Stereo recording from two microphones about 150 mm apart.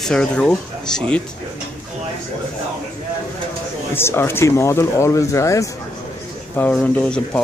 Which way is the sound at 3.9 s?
15° left (ahead or behind).